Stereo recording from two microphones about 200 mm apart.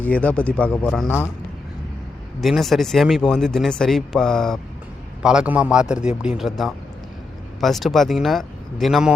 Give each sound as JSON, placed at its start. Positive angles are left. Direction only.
{"t": 0.0, "sound": "speech", "side_deg": 5}
{"t": 2.4, "sound": "speech", "side_deg": 0}